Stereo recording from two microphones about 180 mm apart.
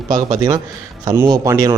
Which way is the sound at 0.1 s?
20° right (ahead or behind).